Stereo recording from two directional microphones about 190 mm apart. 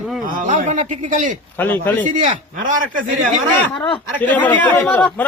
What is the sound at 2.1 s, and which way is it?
Speech, 45° right (ahead or behind).